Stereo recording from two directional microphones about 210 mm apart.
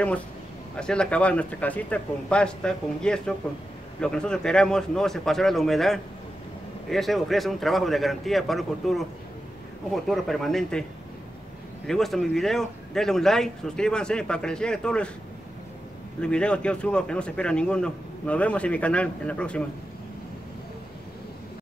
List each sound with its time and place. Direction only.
0.7 s a man's voice: 5° left (ahead or behind)
10.0 s a man's voice: centre (ahead or behind)
16.2 s a man's voice: 5° left (ahead or behind)